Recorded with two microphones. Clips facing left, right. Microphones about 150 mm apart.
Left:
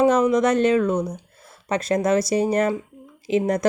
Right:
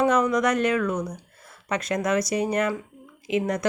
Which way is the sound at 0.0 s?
30° left (ahead or behind).